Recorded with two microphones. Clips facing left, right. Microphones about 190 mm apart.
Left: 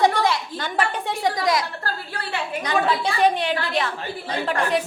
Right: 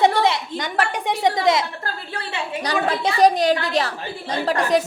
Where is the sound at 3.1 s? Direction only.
40° right (ahead or behind).